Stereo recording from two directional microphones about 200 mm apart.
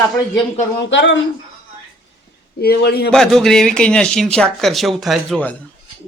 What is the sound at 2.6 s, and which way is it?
Speech, 50° left (ahead or behind).